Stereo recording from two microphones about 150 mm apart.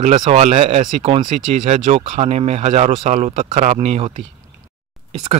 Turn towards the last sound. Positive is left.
turn(degrees=-45)  # may be behind; listen again after turning